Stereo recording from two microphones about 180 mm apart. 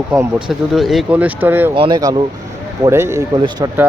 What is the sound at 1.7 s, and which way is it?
Speech, 25° right (ahead or behind).